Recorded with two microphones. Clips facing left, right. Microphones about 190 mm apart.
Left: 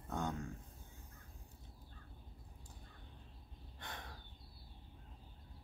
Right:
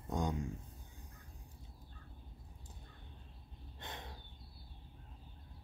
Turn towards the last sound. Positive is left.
turn(degrees=-20)  # may be behind; listen again after turning